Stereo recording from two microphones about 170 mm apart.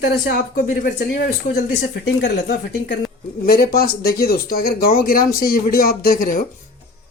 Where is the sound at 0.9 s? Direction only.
70° left (ahead or behind).